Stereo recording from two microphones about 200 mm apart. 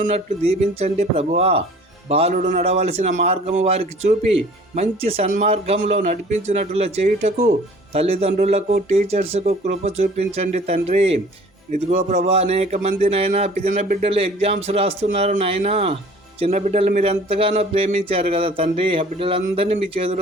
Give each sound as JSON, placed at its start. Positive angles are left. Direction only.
{"t": 0.0, "sound": "a man's voice", "side_deg": -35}
{"t": 14.0, "sound": "a man's voice", "side_deg": -30}